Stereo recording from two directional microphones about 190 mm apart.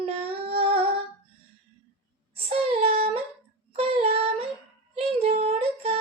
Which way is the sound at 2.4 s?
30° right (ahead or behind).